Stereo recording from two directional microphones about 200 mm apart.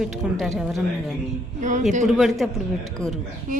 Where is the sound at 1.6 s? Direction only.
40° right (ahead or behind).